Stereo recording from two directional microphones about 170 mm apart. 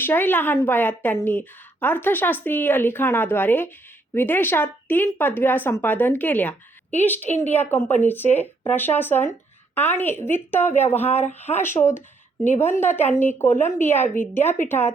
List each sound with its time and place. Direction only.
0.0 s speech: 10° left (ahead or behind)
10.7 s speech: 40° left (ahead or behind)
11.3 s speech: 10° left (ahead or behind)